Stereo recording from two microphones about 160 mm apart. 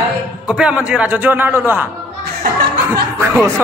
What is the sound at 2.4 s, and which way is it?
Speech, 70° right (ahead or behind).